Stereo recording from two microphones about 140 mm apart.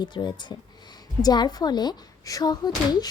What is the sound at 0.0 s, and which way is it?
A woman's voice, 30° left (ahead or behind).